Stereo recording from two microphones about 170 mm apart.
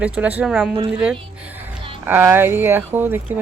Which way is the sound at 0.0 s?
10° right (ahead or behind).